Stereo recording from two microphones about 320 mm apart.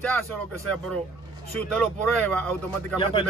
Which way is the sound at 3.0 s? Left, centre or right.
Centre.